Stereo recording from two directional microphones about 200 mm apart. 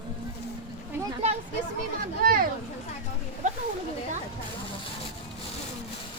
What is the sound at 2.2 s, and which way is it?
Speech, 45° right (ahead or behind).